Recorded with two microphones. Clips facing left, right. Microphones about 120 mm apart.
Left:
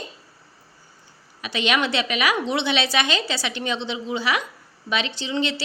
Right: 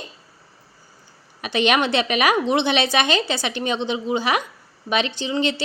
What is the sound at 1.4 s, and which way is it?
A woman's voice, 55° right (ahead or behind).